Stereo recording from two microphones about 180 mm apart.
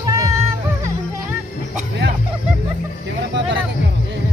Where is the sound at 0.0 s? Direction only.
15° right (ahead or behind).